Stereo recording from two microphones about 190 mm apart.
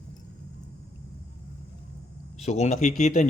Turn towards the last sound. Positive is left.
turn(degrees=40)  # may be behind; listen again after turning